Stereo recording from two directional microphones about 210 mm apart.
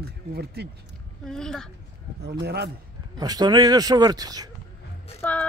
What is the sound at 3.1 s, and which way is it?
A man's voice, 20° right (ahead or behind).